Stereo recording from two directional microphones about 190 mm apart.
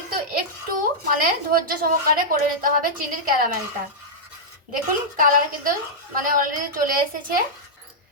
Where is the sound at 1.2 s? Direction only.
50° right (ahead or behind).